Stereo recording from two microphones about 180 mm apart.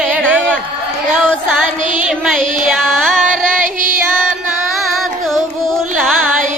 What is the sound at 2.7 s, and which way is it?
Music, centre (ahead or behind).